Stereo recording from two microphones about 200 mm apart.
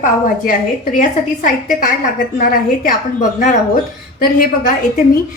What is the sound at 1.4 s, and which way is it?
A woman's voice, 45° left (ahead or behind).